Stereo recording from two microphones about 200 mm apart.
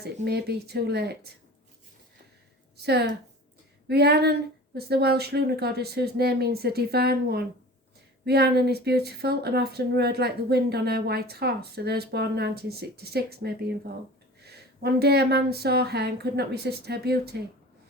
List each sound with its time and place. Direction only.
0.0 s speech: 55° right (ahead or behind)
2.8 s a woman's voice: 55° right (ahead or behind)